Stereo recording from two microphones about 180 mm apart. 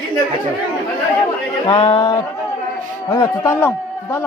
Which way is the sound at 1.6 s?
30° left (ahead or behind).